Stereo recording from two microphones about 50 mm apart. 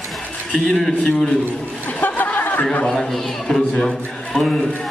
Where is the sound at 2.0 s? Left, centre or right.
Left.